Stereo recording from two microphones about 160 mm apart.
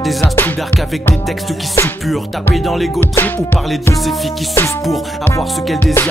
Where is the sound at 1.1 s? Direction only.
Centre (ahead or behind).